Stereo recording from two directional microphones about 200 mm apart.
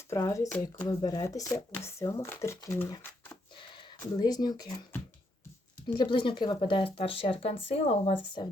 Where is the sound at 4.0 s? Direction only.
20° left (ahead or behind).